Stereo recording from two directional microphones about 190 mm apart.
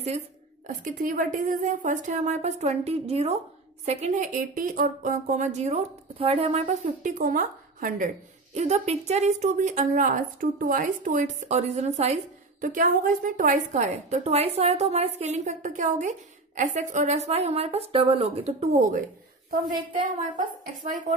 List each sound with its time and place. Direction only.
0.7 s a woman's voice: 45° right (ahead or behind)
8.5 s a woman's voice: 35° right (ahead or behind)